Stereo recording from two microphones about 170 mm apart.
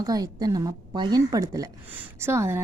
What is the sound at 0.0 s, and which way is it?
A woman's voice, 20° right (ahead or behind).